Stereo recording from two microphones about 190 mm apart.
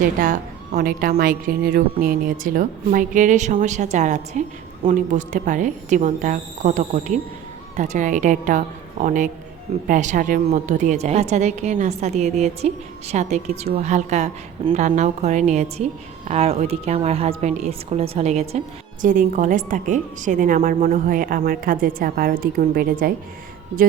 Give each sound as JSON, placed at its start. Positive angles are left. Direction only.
{"t": 0.0, "sound": "a woman's voice", "side_deg": -45}